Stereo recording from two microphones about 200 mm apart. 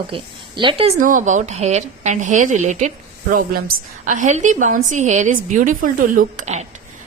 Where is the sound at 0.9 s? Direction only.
40° right (ahead or behind).